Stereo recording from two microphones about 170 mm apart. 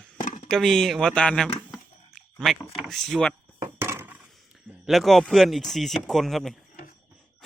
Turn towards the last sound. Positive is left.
turn(degrees=0)  # may be behind; listen again after turning